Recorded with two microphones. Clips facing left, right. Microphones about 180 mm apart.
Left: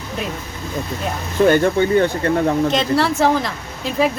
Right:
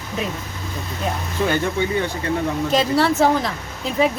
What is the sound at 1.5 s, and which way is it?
Speech, 55° left (ahead or behind).